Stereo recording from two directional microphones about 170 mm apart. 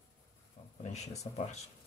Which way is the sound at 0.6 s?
45° left (ahead or behind).